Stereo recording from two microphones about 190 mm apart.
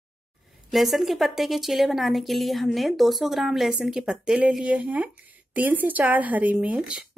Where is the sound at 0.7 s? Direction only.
Centre (ahead or behind).